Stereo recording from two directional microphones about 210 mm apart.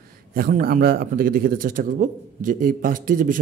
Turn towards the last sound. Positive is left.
turn(degrees=-40)  # may be behind; listen again after turning